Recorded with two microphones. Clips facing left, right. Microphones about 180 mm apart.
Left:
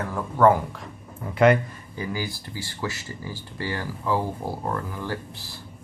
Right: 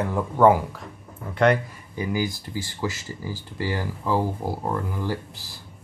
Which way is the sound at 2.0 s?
20° right (ahead or behind).